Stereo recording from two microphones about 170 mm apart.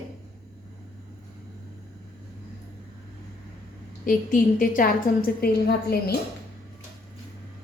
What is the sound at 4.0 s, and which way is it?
A woman's voice, 55° left (ahead or behind).